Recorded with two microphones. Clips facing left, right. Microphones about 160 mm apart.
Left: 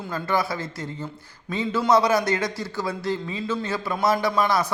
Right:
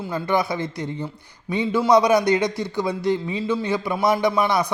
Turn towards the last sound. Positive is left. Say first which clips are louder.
# right 2 dB
turn(degrees=-15)  # may be behind; listen again after turning